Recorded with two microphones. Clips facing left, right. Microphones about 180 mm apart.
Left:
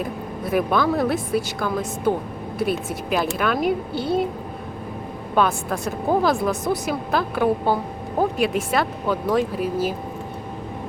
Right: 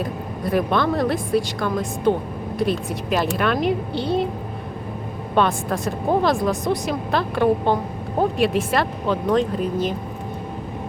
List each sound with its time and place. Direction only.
0.0 s a woman's voice: 5° left (ahead or behind)
5.3 s a woman's voice: centre (ahead or behind)